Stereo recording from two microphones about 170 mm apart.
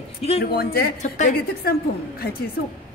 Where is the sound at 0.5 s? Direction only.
65° left (ahead or behind).